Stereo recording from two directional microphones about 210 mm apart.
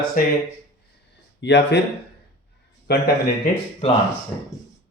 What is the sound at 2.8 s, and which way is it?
Speech, 50° left (ahead or behind).